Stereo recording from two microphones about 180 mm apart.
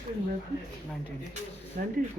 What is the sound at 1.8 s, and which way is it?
Speech, 50° right (ahead or behind).